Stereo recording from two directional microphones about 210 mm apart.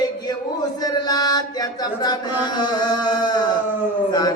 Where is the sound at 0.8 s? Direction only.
20° left (ahead or behind).